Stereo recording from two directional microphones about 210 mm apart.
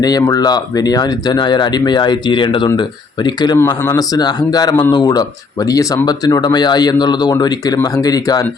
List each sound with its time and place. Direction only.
0.0 s speech: 20° left (ahead or behind)